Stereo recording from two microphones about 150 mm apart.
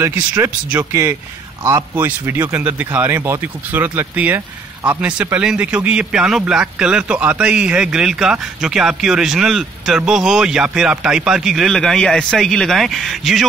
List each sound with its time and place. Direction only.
0.0 s a man's voice: 15° right (ahead or behind)